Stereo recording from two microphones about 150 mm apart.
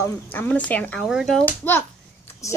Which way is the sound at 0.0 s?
15° left (ahead or behind).